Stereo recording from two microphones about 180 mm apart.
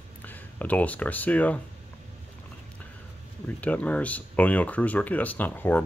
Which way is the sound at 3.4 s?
10° left (ahead or behind).